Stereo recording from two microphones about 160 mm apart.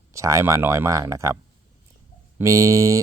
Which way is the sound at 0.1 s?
20° right (ahead or behind).